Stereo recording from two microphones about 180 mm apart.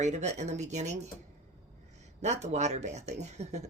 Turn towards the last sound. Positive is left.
turn(degrees=-40)  # may be behind; listen again after turning